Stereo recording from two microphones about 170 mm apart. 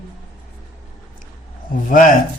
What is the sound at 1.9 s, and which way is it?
Speech, 50° left (ahead or behind).